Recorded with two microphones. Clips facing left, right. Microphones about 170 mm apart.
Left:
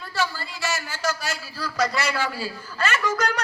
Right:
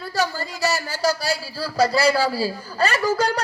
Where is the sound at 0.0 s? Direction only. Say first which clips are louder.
Right 4 dB; 40° right (ahead or behind).